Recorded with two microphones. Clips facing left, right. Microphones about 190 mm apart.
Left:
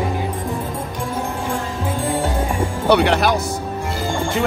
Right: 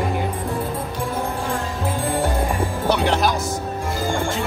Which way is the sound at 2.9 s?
65° left (ahead or behind).